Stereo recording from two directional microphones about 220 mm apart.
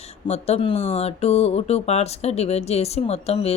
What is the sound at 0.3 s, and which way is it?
Speech, 30° left (ahead or behind).